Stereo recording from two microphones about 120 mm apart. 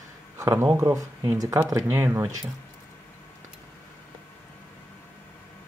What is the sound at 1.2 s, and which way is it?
Speech, 30° right (ahead or behind).